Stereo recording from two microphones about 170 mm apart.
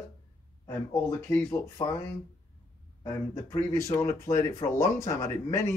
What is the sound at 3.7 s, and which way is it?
Speech, 15° left (ahead or behind).